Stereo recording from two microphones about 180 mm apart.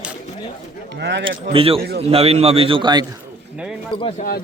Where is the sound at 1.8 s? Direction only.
60° right (ahead or behind).